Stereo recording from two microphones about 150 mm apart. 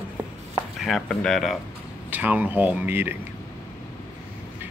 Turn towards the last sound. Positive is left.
turn(degrees=-15)  # may be behind; listen again after turning